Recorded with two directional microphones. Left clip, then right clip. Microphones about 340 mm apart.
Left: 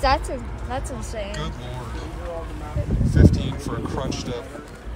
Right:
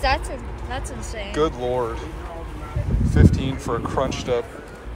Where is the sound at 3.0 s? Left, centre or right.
Centre.